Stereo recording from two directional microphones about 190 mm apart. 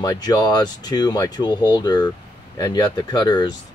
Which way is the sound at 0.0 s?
20° left (ahead or behind).